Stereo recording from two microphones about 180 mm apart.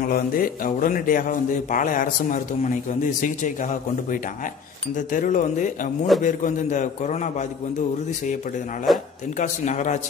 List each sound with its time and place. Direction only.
0.0 s a man's voice: 50° left (ahead or behind)
8.9 s speech: centre (ahead or behind)
9.4 s a man's voice: 40° left (ahead or behind)